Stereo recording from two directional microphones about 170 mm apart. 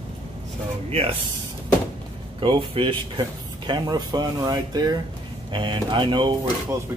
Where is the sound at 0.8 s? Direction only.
35° right (ahead or behind).